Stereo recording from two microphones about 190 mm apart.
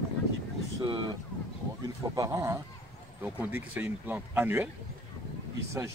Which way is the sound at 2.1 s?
15° right (ahead or behind).